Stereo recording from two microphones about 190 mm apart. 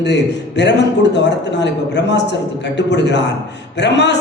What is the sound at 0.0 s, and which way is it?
A man's voice, 65° left (ahead or behind).